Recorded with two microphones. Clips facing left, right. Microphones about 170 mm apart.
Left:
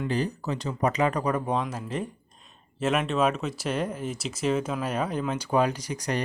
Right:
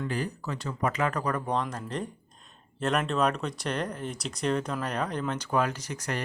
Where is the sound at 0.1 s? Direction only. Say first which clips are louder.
Left 4 dB; 20° left (ahead or behind).